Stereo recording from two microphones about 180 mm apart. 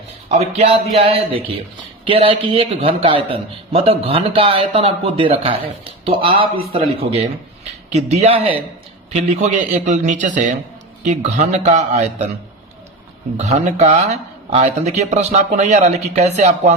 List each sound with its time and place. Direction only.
0.3 s a man's voice: 35° right (ahead or behind)
13.3 s a man's voice: 40° right (ahead or behind)